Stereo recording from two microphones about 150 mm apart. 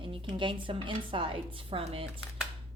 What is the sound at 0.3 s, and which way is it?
Speech, 35° right (ahead or behind).